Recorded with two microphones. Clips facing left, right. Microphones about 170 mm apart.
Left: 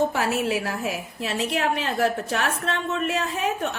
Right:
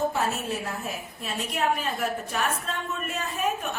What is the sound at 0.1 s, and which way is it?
A woman's voice, 85° left.